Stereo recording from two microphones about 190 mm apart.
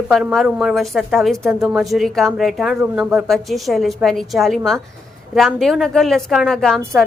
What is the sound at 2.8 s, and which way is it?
Speech, 15° right (ahead or behind).